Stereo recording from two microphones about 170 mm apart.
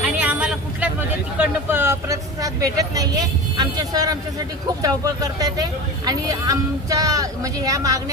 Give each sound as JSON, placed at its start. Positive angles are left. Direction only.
{"t": 0.0, "sound": "a woman's voice", "side_deg": -5}